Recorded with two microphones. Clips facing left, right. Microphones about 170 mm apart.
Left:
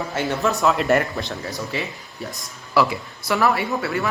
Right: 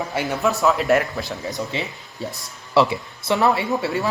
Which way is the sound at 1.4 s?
20° right (ahead or behind).